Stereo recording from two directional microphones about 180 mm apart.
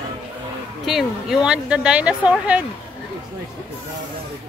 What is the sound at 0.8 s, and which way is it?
A woman's voice, centre (ahead or behind).